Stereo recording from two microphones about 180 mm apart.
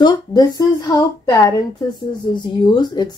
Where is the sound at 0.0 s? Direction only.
25° left (ahead or behind).